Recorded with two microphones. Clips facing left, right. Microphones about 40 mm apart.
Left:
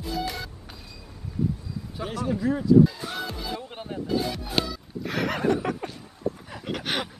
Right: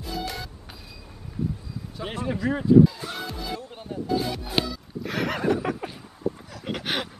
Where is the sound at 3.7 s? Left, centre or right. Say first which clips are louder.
Left 1 dB; left.